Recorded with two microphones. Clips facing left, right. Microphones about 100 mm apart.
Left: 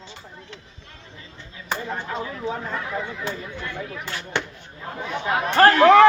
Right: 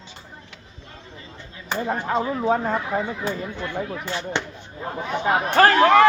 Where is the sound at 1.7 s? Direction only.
40° right (ahead or behind).